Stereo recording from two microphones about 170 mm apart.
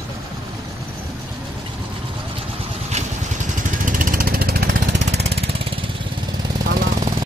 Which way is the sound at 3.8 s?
55° right (ahead or behind).